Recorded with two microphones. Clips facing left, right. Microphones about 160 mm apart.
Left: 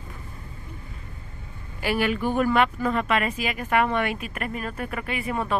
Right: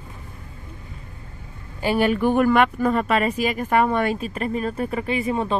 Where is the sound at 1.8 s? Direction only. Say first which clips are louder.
Right 4 dB; 30° right (ahead or behind).